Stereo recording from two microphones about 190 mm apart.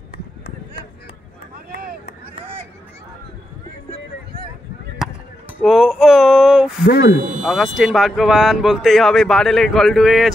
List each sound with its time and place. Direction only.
1.7 s vehicle: 55° right (ahead or behind)
5.6 s a sound: centre (ahead or behind)
7.4 s speech: centre (ahead or behind)